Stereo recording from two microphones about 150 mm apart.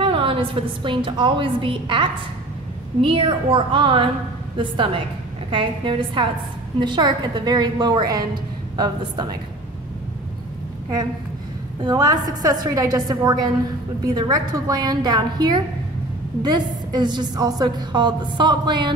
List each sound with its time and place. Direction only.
0.0 s a woman's voice: 35° right (ahead or behind)
11.8 s a woman's voice: 25° right (ahead or behind)